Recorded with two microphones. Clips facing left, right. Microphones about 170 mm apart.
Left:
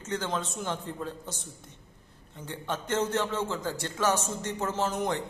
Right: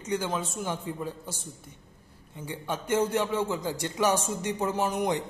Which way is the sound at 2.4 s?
10° right (ahead or behind).